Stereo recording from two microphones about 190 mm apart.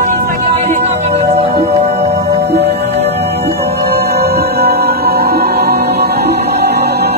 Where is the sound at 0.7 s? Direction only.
35° right (ahead or behind).